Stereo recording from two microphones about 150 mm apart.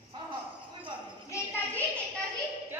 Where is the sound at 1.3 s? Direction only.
15° left (ahead or behind).